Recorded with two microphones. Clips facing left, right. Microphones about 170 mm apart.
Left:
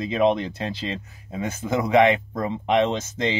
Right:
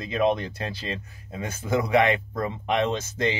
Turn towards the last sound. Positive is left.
turn(degrees=20)  # may be behind; listen again after turning